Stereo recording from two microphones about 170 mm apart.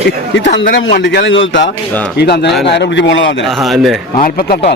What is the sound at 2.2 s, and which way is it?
Speech, 75° left (ahead or behind).